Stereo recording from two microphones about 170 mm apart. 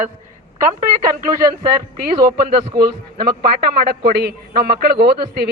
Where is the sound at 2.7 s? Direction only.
65° right (ahead or behind).